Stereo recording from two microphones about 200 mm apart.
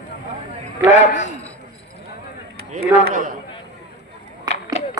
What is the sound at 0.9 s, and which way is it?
Speech, 35° left (ahead or behind).